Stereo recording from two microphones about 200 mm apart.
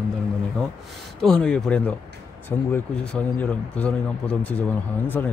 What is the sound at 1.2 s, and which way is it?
Speech, 5° left (ahead or behind).